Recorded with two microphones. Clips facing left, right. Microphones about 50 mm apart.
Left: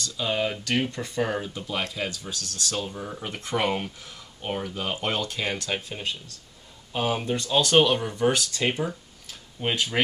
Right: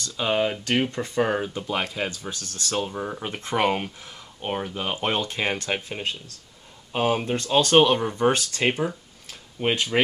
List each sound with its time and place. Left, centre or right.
0.0 s speech: right